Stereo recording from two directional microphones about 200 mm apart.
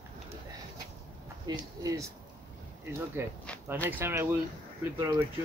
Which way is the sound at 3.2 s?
10° right (ahead or behind).